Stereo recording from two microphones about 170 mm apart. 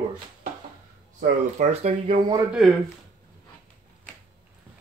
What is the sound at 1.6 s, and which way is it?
Speech, 40° right (ahead or behind).